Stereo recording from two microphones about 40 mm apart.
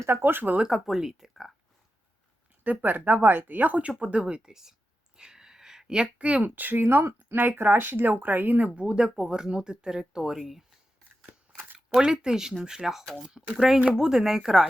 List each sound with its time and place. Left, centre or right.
0.1 s speech: right
0.9 s speech: centre
2.6 s speech: right
4.2 s speech: right
5.1 s a sound: centre
6.1 s speech: right
6.6 s speech: right
7.3 s speech: right
8.6 s speech: right; by 10.6 s centre
11.9 s speech: centre